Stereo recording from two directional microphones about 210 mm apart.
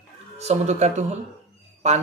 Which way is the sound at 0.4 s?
30° right (ahead or behind).